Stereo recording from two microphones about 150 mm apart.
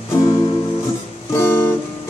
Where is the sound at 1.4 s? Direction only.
15° left (ahead or behind).